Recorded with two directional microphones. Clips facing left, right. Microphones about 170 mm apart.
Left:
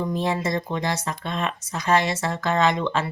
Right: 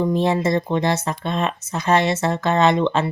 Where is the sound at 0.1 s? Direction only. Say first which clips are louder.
Right 6 dB; 25° right (ahead or behind).